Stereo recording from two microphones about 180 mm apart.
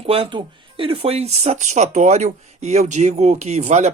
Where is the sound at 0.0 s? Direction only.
30° right (ahead or behind).